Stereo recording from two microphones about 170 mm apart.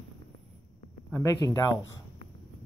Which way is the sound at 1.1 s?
20° left (ahead or behind).